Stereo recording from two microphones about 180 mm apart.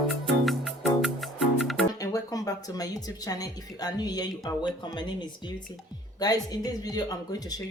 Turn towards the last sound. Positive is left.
turn(degrees=20)  # may be behind; listen again after turning